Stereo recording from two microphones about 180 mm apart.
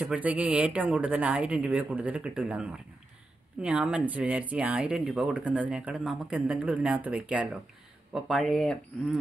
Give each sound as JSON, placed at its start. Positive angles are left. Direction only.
{"t": 0.0, "sound": "speech", "side_deg": -10}